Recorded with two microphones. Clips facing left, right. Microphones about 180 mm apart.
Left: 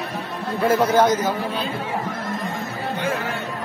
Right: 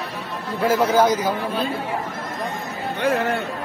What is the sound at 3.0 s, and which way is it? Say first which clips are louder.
Speech: right 6 dB; 70° right (ahead or behind).